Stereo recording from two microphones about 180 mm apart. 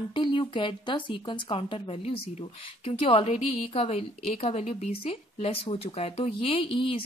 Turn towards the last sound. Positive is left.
turn(degrees=30)  # may be behind; listen again after turning